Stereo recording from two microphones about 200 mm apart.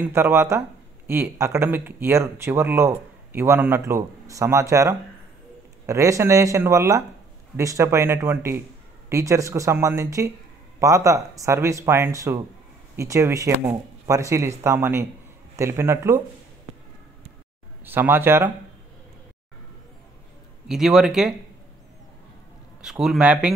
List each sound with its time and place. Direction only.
0.1 s speech: 15° right (ahead or behind)
17.8 s speech: 10° right (ahead or behind)
20.6 s speech: centre (ahead or behind)
22.8 s speech: 5° right (ahead or behind)